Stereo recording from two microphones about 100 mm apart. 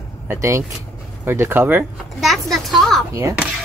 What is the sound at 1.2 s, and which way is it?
Speech, 25° right (ahead or behind).